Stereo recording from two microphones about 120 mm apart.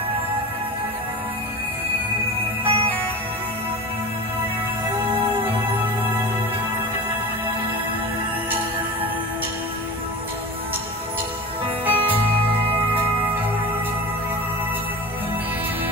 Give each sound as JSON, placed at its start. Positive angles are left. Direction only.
{"t": 2.6, "sound": "music", "side_deg": -50}
{"t": 11.8, "sound": "music", "side_deg": -15}